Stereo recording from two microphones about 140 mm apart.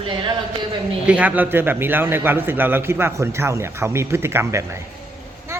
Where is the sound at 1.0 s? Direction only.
10° right (ahead or behind).